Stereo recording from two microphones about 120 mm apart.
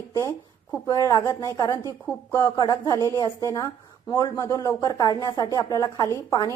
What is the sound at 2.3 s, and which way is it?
A woman's voice, 30° left (ahead or behind).